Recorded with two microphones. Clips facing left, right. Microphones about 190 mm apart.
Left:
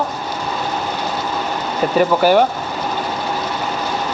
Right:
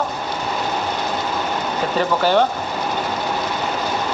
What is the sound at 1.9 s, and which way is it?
Speech, 10° left (ahead or behind).